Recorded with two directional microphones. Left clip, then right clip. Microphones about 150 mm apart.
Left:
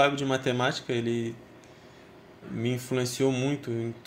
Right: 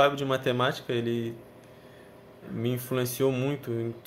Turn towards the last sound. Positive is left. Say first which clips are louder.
# even
turn(degrees=-5)  # may be behind; listen again after turning